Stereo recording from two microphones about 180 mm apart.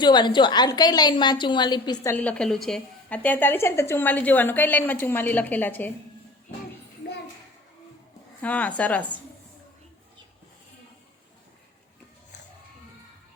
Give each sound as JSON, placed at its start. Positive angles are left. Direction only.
{"t": 0.0, "sound": "a woman's voice", "side_deg": 25}
{"t": 2.1, "sound": "a woman's voice", "side_deg": 5}
{"t": 8.4, "sound": "a woman's voice", "side_deg": 10}